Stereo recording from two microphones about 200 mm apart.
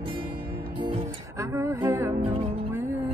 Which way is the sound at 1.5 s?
15° right (ahead or behind).